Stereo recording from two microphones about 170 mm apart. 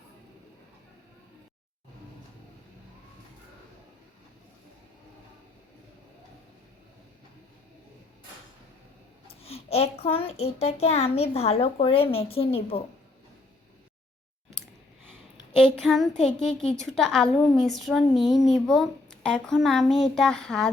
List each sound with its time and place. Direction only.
9.2 s a child's voice: 35° left (ahead or behind)
15.5 s a woman's voice: 5° left (ahead or behind)